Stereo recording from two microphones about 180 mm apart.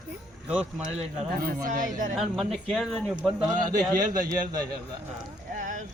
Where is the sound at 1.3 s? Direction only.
55° right (ahead or behind).